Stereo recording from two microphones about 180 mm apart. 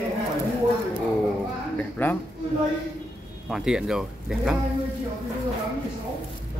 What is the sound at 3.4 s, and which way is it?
Speech, 5° right (ahead or behind).